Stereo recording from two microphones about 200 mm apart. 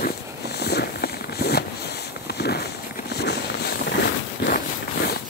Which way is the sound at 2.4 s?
55° left (ahead or behind).